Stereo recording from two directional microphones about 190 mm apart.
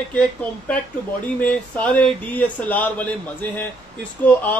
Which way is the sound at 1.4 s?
5° left (ahead or behind).